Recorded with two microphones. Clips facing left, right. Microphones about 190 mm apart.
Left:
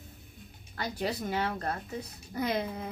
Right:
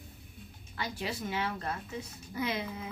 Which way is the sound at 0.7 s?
40° left (ahead or behind).